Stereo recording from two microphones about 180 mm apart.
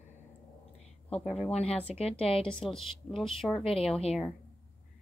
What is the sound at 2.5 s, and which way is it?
A woman's voice, 5° left (ahead or behind).